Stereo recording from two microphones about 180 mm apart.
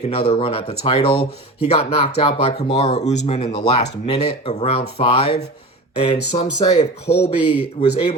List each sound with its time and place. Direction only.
0.1 s speech: 30° left (ahead or behind)